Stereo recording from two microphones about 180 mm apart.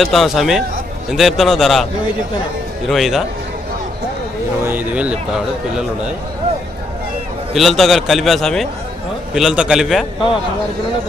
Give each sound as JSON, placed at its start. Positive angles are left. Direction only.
{"t": 0.0, "sound": "a man's voice", "side_deg": 0}
{"t": 2.9, "sound": "a man's voice", "side_deg": 0}
{"t": 4.6, "sound": "speech", "side_deg": -10}
{"t": 7.5, "sound": "a man's voice", "side_deg": 0}